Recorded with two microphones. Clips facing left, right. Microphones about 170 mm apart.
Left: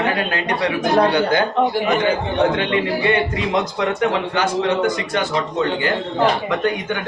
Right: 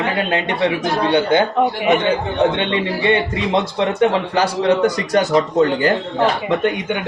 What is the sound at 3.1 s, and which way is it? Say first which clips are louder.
A man's voice: right 5 dB; 25° right (ahead or behind).